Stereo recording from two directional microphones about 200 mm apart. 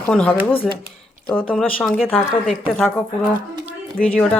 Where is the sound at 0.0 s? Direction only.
5° left (ahead or behind).